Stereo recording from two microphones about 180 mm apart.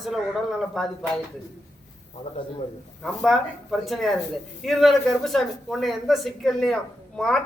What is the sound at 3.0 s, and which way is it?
A man's voice, centre (ahead or behind).